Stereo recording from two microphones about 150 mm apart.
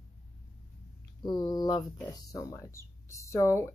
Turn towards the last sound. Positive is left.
turn(degrees=20)  # may be behind; listen again after turning